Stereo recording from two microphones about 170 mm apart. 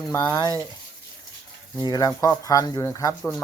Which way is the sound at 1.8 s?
25° left (ahead or behind).